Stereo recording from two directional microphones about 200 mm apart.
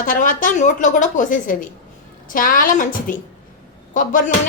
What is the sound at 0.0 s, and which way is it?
A woman's voice, 45° left (ahead or behind).